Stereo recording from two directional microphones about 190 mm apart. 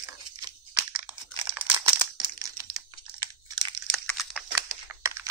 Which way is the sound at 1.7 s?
10° right (ahead or behind).